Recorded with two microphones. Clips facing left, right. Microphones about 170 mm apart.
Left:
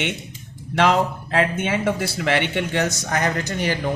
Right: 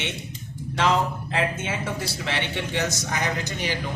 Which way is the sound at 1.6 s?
65° left (ahead or behind).